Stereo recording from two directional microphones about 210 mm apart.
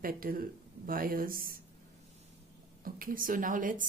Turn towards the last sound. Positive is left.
turn(degrees=-40)  # may be behind; listen again after turning